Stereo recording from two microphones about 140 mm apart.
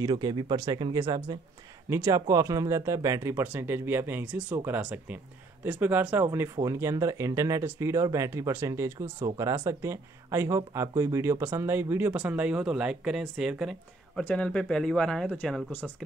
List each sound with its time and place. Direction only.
0.0 s speech: 30° right (ahead or behind); by 15.9 s 10° left (ahead or behind)